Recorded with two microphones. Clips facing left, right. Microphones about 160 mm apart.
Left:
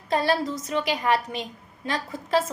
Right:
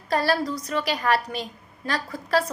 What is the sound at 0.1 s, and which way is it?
A woman's voice, 20° left (ahead or behind).